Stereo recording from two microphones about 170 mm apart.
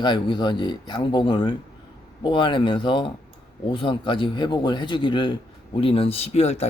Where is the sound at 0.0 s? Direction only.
25° left (ahead or behind).